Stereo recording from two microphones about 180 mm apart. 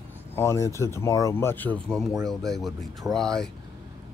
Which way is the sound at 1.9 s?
Centre (ahead or behind).